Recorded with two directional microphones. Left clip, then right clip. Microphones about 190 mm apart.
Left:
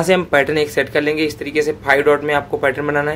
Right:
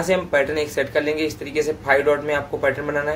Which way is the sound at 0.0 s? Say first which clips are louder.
Left 5 dB; 45° left (ahead or behind).